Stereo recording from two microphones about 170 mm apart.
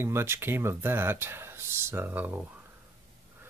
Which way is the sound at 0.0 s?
15° right (ahead or behind).